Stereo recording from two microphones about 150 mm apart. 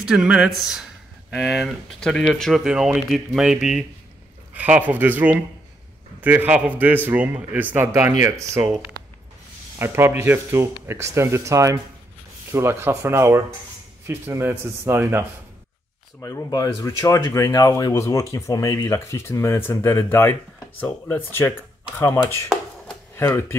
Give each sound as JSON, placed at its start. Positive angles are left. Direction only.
{"t": 0.0, "sound": "a man's voice", "side_deg": -5}
{"t": 9.8, "sound": "a man's voice", "side_deg": -15}
{"t": 16.2, "sound": "speech", "side_deg": 20}